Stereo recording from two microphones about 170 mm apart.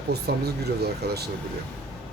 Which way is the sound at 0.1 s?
70° right (ahead or behind).